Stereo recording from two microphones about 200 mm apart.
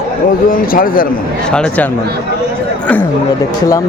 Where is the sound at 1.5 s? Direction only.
5° left (ahead or behind).